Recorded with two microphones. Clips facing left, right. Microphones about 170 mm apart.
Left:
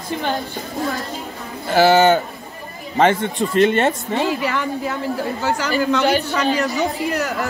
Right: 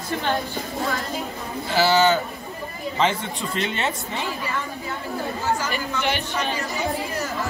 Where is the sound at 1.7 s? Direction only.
55° left (ahead or behind); by 4.9 s 90° left.